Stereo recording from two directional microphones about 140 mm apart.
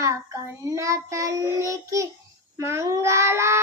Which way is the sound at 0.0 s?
20° right (ahead or behind).